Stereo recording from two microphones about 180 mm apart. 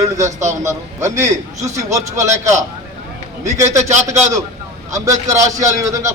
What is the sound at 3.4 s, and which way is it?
Speech, 15° right (ahead or behind).